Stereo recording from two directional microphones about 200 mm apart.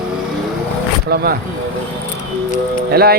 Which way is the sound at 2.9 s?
50° right (ahead or behind).